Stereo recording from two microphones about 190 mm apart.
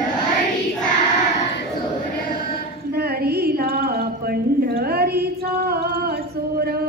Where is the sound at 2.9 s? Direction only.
55° right (ahead or behind).